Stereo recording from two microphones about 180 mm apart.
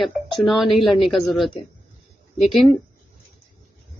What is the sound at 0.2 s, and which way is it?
Music, centre (ahead or behind).